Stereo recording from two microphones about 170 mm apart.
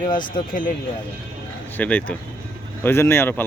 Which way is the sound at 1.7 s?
10° left (ahead or behind).